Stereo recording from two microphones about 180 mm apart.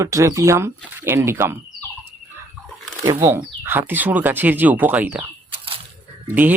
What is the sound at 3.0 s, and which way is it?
Speech, 20° right (ahead or behind).